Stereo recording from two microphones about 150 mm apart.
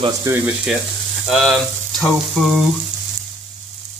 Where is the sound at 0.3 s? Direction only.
20° right (ahead or behind).